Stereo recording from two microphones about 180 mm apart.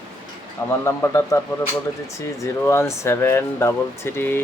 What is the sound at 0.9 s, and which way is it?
Speech, 15° left (ahead or behind).